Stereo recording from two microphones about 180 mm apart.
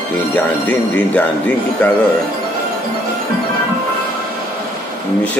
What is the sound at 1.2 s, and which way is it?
Speech, 10° left (ahead or behind).